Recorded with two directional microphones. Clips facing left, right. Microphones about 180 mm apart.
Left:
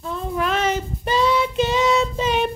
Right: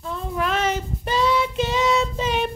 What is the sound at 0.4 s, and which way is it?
Child singing, 5° right (ahead or behind).